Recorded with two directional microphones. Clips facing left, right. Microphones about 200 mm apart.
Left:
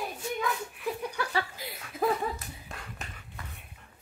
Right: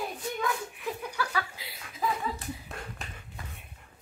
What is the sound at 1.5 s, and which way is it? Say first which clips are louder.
Chuckle: left 8 dB; 50° left (ahead or behind).